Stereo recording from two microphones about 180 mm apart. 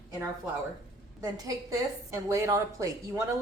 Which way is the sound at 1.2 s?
20° right (ahead or behind).